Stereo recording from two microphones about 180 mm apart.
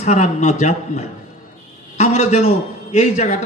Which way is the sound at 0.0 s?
40° left (ahead or behind).